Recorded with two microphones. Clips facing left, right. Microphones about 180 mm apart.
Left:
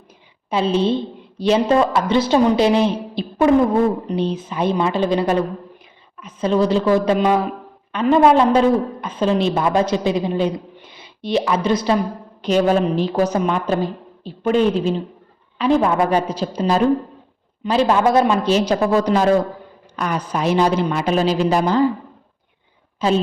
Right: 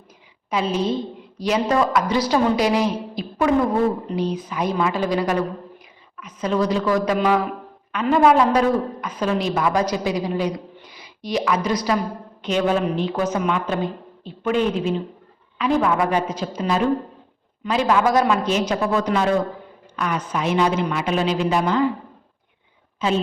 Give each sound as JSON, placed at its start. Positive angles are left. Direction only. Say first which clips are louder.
{"t": 0.5, "sound": "a woman's voice", "louder": "left 4 dB", "side_deg": 30}
{"t": 12.4, "sound": "a woman's voice", "louder": "left 4 dB", "side_deg": 35}
{"t": 23.0, "sound": "a woman's voice", "louder": "left 4 dB", "side_deg": 35}